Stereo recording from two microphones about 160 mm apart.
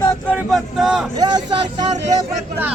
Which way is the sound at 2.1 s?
20° right (ahead or behind).